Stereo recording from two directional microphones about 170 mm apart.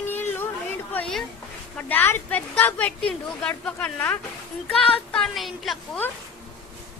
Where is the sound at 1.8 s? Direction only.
10° left (ahead or behind).